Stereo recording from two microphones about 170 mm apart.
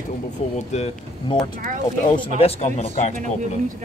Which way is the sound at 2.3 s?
35° left (ahead or behind).